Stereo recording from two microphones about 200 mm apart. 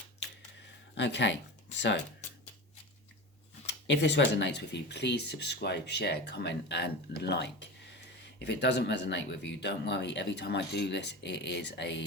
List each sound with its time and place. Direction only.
0.9 s speech: 60° left (ahead or behind)
3.7 s speech: 60° left (ahead or behind)